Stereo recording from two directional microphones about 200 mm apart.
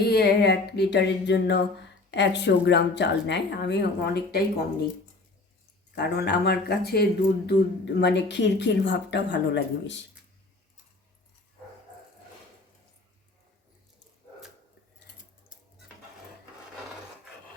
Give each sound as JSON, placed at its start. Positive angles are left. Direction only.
{"t": 0.0, "sound": "speech", "side_deg": 50}
{"t": 5.9, "sound": "speech", "side_deg": 55}